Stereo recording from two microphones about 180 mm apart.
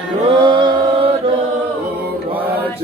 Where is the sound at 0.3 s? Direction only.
25° right (ahead or behind).